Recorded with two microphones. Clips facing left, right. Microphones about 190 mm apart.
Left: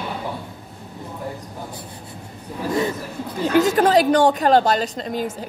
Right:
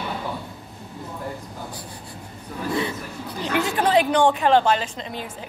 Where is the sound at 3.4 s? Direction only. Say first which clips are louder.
Left 6 dB; 45° left (ahead or behind).